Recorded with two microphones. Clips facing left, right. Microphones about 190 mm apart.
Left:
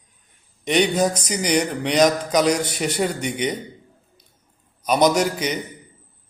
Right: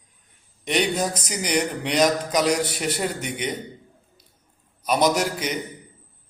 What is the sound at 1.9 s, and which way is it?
A man's voice, centre (ahead or behind).